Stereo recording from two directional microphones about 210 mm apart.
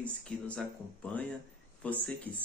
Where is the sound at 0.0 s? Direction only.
5° left (ahead or behind).